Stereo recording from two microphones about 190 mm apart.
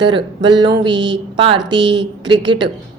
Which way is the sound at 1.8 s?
70° right (ahead or behind).